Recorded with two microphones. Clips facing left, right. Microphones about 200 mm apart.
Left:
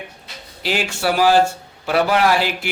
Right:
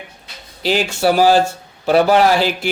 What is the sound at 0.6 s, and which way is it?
Speech, 40° right (ahead or behind).